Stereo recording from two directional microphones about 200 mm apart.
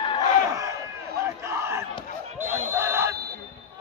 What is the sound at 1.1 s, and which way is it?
Crowd, 15° right (ahead or behind).